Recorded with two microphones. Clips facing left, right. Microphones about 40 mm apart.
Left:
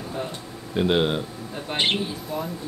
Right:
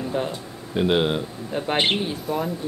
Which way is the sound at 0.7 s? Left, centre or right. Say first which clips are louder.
Right 1 dB; centre.